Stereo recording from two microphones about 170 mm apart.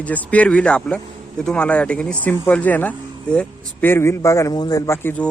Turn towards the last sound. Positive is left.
turn(degrees=10)  # may be behind; listen again after turning